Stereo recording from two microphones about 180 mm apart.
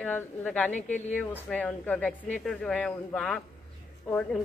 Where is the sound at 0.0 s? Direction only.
10° left (ahead or behind).